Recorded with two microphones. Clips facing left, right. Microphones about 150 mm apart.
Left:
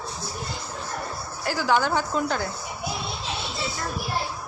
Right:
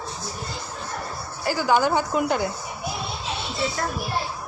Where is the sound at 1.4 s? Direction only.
5° right (ahead or behind).